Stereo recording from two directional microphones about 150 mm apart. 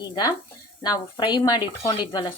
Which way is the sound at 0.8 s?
25° left (ahead or behind).